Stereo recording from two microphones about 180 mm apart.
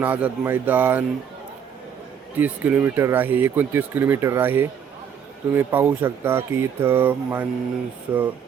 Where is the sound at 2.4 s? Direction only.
10° right (ahead or behind).